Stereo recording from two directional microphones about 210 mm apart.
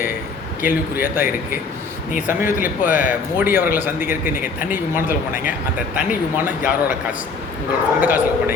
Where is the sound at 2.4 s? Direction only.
40° left (ahead or behind).